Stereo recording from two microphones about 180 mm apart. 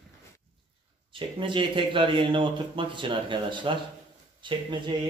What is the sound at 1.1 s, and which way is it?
Mantra, 25° right (ahead or behind).